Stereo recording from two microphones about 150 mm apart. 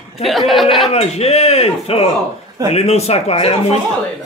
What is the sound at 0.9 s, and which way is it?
Speech, 45° left (ahead or behind).